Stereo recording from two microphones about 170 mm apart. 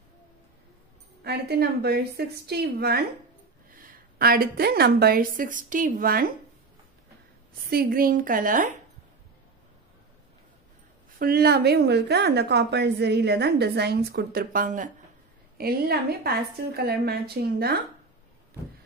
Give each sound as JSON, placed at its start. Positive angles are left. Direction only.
{"t": 1.2, "sound": "a woman's voice", "side_deg": -70}
{"t": 7.7, "sound": "a woman's voice", "side_deg": -60}
{"t": 11.1, "sound": "a woman's voice", "side_deg": -65}
{"t": 15.5, "sound": "a woman's voice", "side_deg": -65}